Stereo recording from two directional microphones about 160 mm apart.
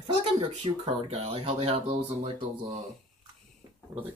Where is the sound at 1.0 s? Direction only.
40° right (ahead or behind).